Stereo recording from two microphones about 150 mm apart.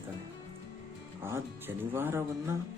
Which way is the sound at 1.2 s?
15° right (ahead or behind).